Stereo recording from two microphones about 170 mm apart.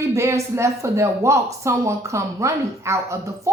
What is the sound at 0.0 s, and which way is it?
A woman's voice, 15° right (ahead or behind).